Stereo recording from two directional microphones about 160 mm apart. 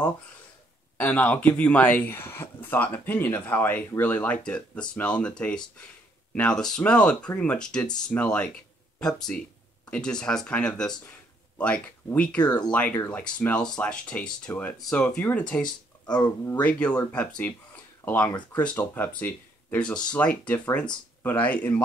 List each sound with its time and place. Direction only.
0.9 s speech: 10° left (ahead or behind)
6.3 s speech: 5° left (ahead or behind)
9.8 s speech: 5° left (ahead or behind)
15.6 s speech: 25° left (ahead or behind)
16.6 s speech: 10° left (ahead or behind)